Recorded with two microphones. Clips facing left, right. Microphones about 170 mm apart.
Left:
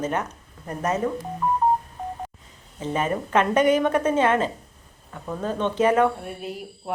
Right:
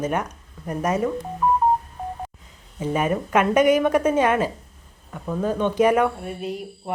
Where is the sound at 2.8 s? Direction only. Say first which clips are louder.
Right 2 dB; 10° right (ahead or behind).